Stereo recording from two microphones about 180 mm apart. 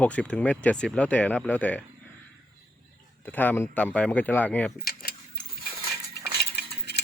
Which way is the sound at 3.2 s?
10° left (ahead or behind).